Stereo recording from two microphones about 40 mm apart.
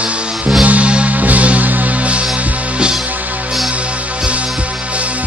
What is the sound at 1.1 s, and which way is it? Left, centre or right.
Music, right.